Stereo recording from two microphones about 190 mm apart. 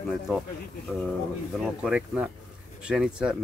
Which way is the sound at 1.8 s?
Centre (ahead or behind).